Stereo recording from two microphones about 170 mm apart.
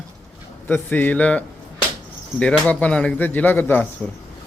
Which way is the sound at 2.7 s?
5° left (ahead or behind).